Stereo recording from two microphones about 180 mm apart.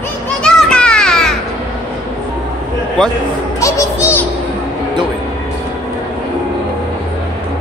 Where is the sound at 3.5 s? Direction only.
15° left (ahead or behind).